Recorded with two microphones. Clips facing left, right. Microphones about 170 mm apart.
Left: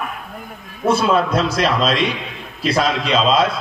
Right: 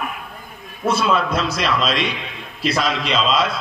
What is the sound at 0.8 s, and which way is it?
A man's voice, 50° left (ahead or behind).